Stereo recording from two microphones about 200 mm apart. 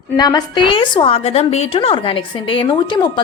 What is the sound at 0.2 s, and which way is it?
A woman's voice, 20° left (ahead or behind).